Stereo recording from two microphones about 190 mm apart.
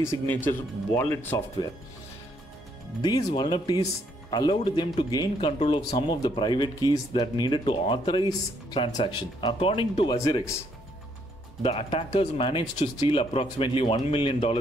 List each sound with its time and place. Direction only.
0.0 s speech: 15° left (ahead or behind)
3.0 s speech: 20° left (ahead or behind)
11.6 s speech: 30° left (ahead or behind)
12.7 s speech: 40° left (ahead or behind)